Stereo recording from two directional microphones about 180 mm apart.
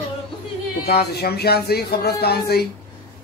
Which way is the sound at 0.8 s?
60° left (ahead or behind).